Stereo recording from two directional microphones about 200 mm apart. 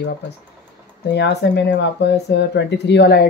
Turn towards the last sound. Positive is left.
turn(degrees=55)  # may be behind; listen again after turning